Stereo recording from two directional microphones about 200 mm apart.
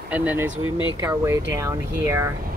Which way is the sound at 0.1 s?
10° right (ahead or behind).